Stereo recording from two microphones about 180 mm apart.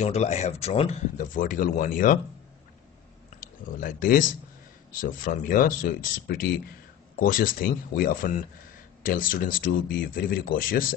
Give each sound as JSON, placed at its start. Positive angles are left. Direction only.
{"t": 0.0, "sound": "speech", "side_deg": 40}
{"t": 3.3, "sound": "speech", "side_deg": 50}